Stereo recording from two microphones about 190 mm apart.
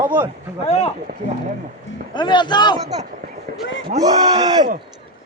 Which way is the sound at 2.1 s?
25° left (ahead or behind).